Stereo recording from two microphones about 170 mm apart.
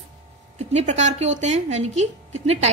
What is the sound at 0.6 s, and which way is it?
A woman's voice, 40° right (ahead or behind).